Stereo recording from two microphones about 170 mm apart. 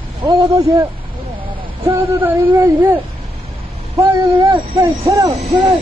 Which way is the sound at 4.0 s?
20° right (ahead or behind).